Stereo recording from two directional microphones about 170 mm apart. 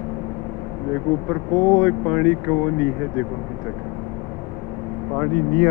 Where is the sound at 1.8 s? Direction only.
5° right (ahead or behind).